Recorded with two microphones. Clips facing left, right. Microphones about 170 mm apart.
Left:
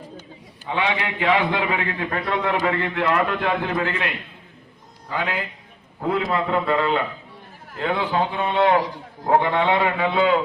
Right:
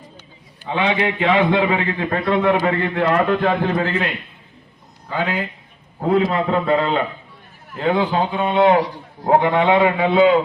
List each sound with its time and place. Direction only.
0.7 s a man's voice: 25° right (ahead or behind)
5.1 s a man's voice: 30° right (ahead or behind)